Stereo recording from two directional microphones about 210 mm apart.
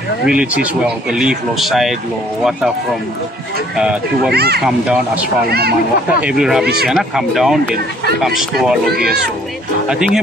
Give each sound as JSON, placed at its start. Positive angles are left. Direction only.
{"t": 0.3, "sound": "speech", "side_deg": -5}
{"t": 3.7, "sound": "speech", "side_deg": -5}
{"t": 4.3, "sound": "a child's voice", "side_deg": -50}
{"t": 4.6, "sound": "speech", "side_deg": -5}
{"t": 5.5, "sound": "a child's voice", "side_deg": -50}
{"t": 6.2, "sound": "speech", "side_deg": -5}
{"t": 9.8, "sound": "speech", "side_deg": -5}